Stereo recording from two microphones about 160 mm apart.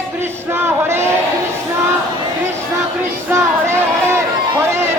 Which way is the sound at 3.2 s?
15° right (ahead or behind).